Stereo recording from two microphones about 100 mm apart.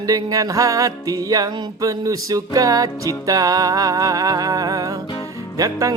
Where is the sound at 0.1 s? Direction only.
35° right (ahead or behind).